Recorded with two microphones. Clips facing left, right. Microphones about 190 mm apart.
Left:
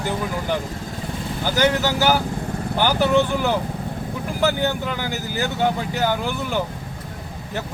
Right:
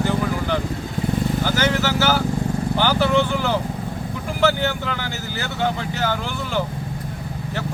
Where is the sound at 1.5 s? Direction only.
15° left (ahead or behind).